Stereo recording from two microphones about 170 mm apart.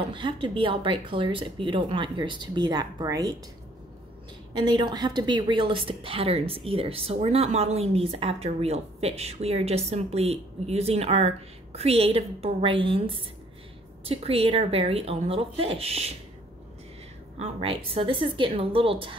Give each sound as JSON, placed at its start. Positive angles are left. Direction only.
{"t": 0.1, "sound": "speech", "side_deg": -30}
{"t": 4.6, "sound": "a woman's voice", "side_deg": -25}
{"t": 17.4, "sound": "a woman's voice", "side_deg": -35}